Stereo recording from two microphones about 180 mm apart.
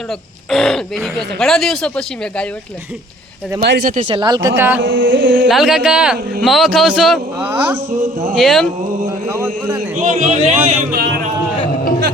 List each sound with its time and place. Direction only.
0.5 s speech: centre (ahead or behind)
3.6 s speech: 65° right (ahead or behind)
4.1 s speech: 25° right (ahead or behind)
4.8 s carnatic music: 85° right
5.5 s speech: centre (ahead or behind)
8.4 s speech: centre (ahead or behind)
9.3 s a man's voice: 15° right (ahead or behind)
10.0 s a man's voice: 45° right (ahead or behind)
10.7 s speech: 55° right (ahead or behind)